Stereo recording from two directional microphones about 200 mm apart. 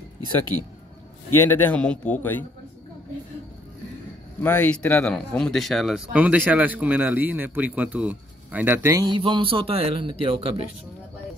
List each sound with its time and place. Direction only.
0.5 s speech: 35° left (ahead or behind)
1.3 s a man's voice: 10° left (ahead or behind)
4.4 s speech: 10° left (ahead or behind); by 10.7 s 25° right (ahead or behind)